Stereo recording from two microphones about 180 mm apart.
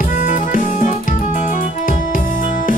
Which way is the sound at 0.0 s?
50° left (ahead or behind).